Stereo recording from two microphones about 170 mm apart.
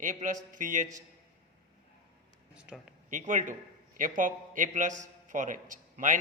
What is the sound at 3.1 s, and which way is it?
A man's voice, 50° right (ahead or behind).